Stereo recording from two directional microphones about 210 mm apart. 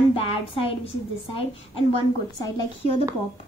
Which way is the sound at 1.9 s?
20° left (ahead or behind).